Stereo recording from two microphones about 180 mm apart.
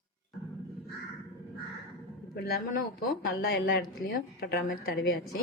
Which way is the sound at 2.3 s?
55° left (ahead or behind).